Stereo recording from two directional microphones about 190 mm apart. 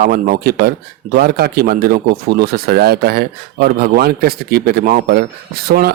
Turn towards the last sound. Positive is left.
turn(degrees=-50)  # may be behind; listen again after turning